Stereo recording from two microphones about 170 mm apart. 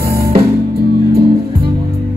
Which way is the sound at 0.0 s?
65° right (ahead or behind).